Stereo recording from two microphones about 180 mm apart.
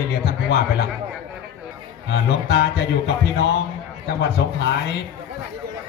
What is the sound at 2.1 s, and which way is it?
A man's voice, 65° left (ahead or behind).